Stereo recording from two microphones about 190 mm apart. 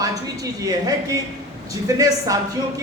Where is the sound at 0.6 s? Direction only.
20° right (ahead or behind).